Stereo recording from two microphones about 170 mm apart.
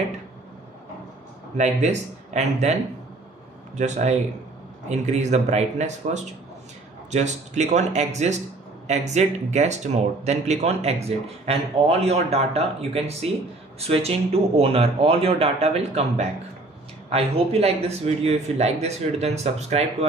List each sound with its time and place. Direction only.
1.6 s speech: 40° right (ahead or behind)